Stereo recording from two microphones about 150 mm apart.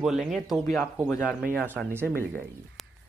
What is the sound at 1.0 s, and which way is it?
Speech, 15° left (ahead or behind).